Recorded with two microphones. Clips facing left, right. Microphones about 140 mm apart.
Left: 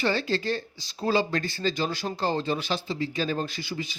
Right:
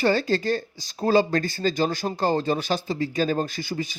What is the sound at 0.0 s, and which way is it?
Speech, 40° right (ahead or behind).